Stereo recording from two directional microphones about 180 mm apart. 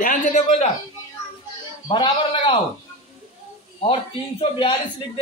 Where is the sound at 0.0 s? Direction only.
45° left (ahead or behind).